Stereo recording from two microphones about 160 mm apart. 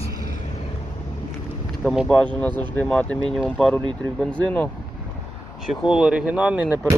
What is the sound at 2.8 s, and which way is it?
Speech, 5° left (ahead or behind).